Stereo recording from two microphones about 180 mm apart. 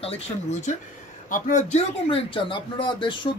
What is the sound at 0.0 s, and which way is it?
Speech, 35° left (ahead or behind).